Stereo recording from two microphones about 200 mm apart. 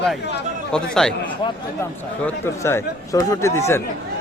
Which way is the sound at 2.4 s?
15° left (ahead or behind).